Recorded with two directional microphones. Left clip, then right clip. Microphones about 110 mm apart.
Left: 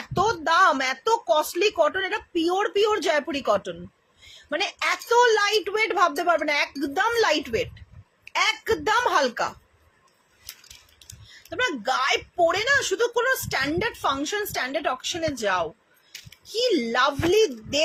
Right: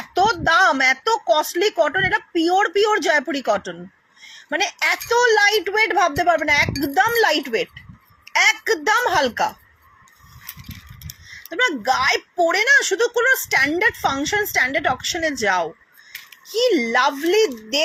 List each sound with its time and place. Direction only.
0.2 s speech: 15° right (ahead or behind)
6.4 s speech: 15° right (ahead or behind)
11.4 s a woman's voice: 15° right (ahead or behind)